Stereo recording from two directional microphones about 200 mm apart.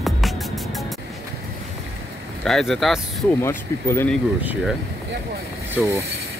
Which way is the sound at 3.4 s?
10° left (ahead or behind).